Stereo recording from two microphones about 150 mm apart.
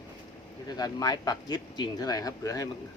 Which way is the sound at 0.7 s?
25° left (ahead or behind).